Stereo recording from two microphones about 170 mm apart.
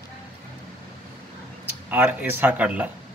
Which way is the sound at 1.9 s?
15° right (ahead or behind).